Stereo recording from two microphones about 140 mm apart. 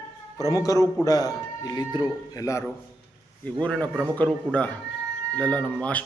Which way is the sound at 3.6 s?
10° left (ahead or behind).